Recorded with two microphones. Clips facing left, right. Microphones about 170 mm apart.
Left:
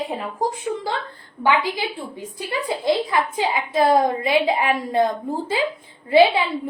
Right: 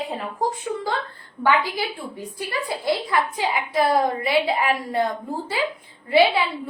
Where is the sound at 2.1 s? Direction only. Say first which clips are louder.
Left 1 dB; 20° left (ahead or behind).